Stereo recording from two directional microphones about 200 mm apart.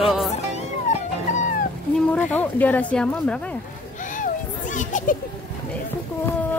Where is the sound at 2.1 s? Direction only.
5° left (ahead or behind).